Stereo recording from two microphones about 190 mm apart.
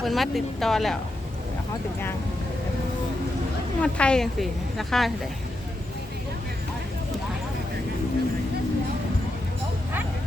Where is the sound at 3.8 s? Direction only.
5° left (ahead or behind).